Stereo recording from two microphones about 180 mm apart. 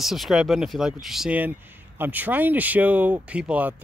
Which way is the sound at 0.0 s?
Centre (ahead or behind).